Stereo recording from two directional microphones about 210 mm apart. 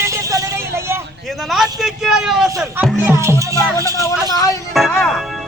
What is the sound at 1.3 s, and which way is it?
A man's voice, centre (ahead or behind).